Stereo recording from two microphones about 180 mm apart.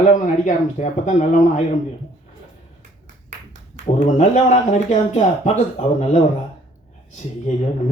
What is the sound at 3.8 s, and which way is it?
Speech, 40° left (ahead or behind).